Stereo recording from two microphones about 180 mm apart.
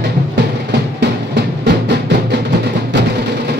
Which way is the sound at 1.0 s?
70° right (ahead or behind).